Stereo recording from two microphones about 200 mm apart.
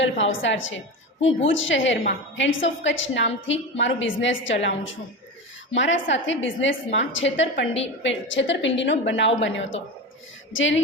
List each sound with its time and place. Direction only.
0.0 s a woman's voice: 70° left (ahead or behind)